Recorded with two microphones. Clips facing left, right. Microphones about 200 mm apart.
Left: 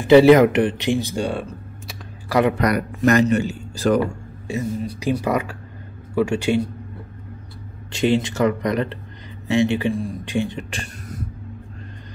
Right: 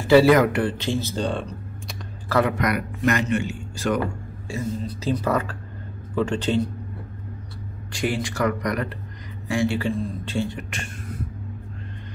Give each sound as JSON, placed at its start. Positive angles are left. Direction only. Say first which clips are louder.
{"t": 0.0, "sound": "speech", "louder": "left 4 dB", "side_deg": 20}
{"t": 2.5, "sound": "a man's voice", "louder": "left 4 dB", "side_deg": 35}
{"t": 4.5, "sound": "a woman's voice", "louder": "left 4 dB", "side_deg": 15}
{"t": 7.9, "sound": "a woman's voice", "louder": "left 7 dB", "side_deg": 25}
{"t": 10.7, "sound": "a sound", "louder": "left 1 dB", "side_deg": 40}